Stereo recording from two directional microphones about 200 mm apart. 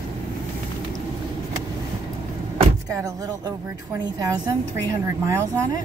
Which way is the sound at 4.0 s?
20° right (ahead or behind).